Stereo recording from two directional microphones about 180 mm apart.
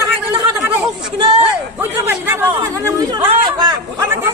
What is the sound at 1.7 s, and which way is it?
A man's voice, 15° right (ahead or behind).